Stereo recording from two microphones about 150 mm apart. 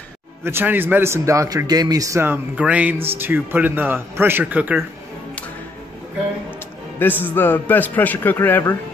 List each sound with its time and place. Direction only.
0.4 s a man's voice: 15° right (ahead or behind)
7.0 s a man's voice: 10° left (ahead or behind)